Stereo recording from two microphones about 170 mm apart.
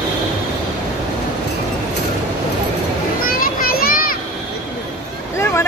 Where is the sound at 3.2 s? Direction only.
60° left (ahead or behind).